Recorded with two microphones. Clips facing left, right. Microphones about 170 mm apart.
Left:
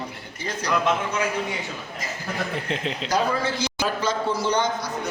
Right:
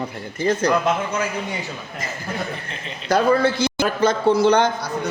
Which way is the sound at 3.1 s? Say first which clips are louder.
Right 8 dB; 55° right (ahead or behind).